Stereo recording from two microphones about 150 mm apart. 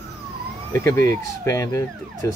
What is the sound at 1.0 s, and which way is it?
Speech, 20° left (ahead or behind).